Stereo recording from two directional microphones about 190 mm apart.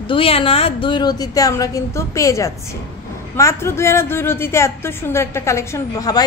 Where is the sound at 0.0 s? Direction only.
30° left (ahead or behind).